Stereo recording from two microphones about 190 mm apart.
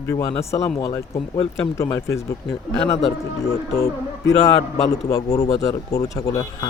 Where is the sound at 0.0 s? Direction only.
15° left (ahead or behind).